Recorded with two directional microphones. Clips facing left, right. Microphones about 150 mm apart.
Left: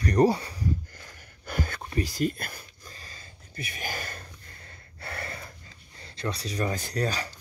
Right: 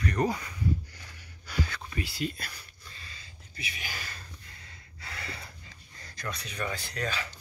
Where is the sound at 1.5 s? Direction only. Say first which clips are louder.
Left 2 dB; 50° left (ahead or behind).